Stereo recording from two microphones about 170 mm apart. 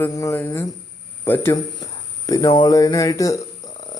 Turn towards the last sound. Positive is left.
turn(degrees=20)  # may be behind; listen again after turning